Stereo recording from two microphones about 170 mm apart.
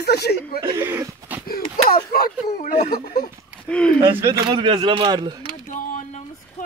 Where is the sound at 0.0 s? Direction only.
70° left (ahead or behind).